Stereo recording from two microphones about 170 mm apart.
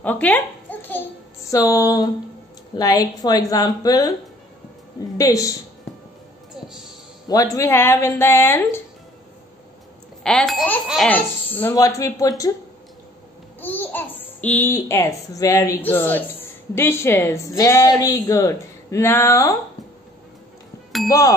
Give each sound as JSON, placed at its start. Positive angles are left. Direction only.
{"t": 0.0, "sound": "a sound", "side_deg": 10}
{"t": 1.5, "sound": "speech", "side_deg": 20}
{"t": 5.1, "sound": "speech", "side_deg": 20}
{"t": 7.5, "sound": "a woman's voice", "side_deg": 15}
{"t": 10.2, "sound": "speech", "side_deg": 0}
{"t": 13.6, "sound": "a woman's voice", "side_deg": 10}